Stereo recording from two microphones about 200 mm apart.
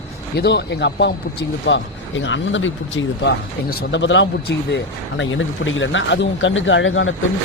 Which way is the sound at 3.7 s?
55° left (ahead or behind).